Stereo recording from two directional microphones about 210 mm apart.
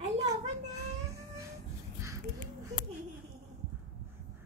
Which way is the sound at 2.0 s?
15° right (ahead or behind).